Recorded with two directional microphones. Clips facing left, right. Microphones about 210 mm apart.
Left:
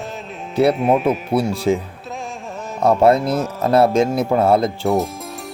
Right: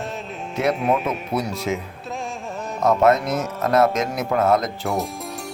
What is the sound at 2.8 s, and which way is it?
Speech, 30° left (ahead or behind).